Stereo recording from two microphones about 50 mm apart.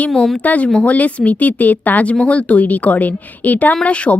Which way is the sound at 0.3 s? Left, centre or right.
Left.